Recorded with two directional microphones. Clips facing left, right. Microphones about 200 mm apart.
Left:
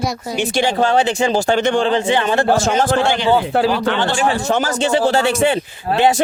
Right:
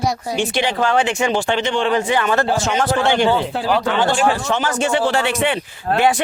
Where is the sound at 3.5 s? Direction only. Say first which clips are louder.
Left 8 dB; 60° left (ahead or behind).